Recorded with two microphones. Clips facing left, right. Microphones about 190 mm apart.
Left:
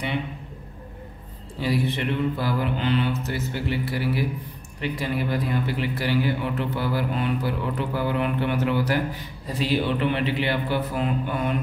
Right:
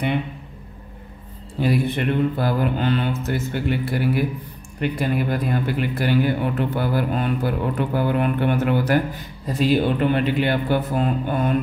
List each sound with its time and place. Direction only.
1.6 s a man's voice: 55° right (ahead or behind)